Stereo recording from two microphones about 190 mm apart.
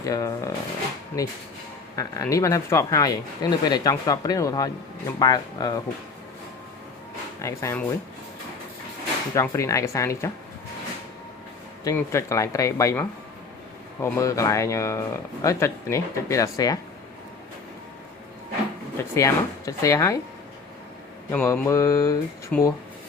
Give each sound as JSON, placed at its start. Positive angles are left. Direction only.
{"t": 0.0, "sound": "speech", "side_deg": 15}
{"t": 7.4, "sound": "speech", "side_deg": 15}
{"t": 9.3, "sound": "speech", "side_deg": 15}
{"t": 11.8, "sound": "speech", "side_deg": 15}
{"t": 19.1, "sound": "speech", "side_deg": 15}
{"t": 21.2, "sound": "speech", "side_deg": 10}